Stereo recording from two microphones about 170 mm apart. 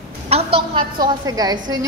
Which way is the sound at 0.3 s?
30° right (ahead or behind).